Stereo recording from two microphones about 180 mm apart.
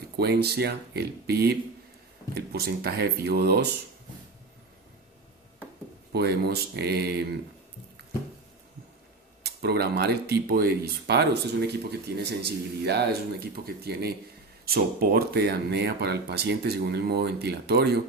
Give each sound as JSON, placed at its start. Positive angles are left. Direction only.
{"t": 0.2, "sound": "speech", "side_deg": -65}
{"t": 6.1, "sound": "speech", "side_deg": -60}
{"t": 9.4, "sound": "speech", "side_deg": -65}